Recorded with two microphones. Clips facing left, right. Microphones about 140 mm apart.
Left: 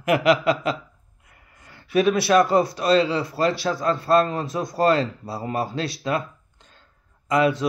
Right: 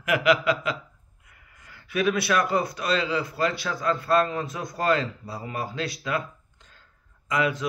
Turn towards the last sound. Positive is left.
turn(degrees=35)  # may be behind; listen again after turning